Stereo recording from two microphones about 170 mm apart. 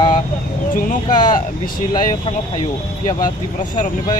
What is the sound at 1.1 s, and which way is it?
Speech, 25° left (ahead or behind).